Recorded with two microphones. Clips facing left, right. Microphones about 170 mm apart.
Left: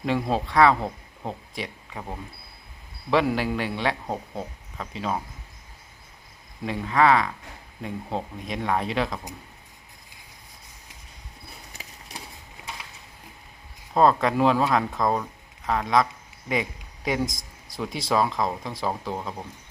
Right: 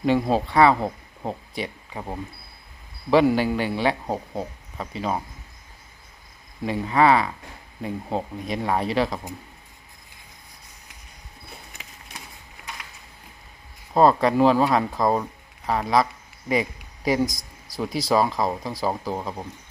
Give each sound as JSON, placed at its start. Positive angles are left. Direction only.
{"t": 0.0, "sound": "speech", "side_deg": 0}
{"t": 3.1, "sound": "speech", "side_deg": 0}
{"t": 6.7, "sound": "speech", "side_deg": -5}
{"t": 11.7, "sound": "a sound", "side_deg": 35}
{"t": 13.9, "sound": "speech", "side_deg": -5}
{"t": 17.2, "sound": "a sound", "side_deg": 25}
{"t": 18.1, "sound": "speech", "side_deg": -5}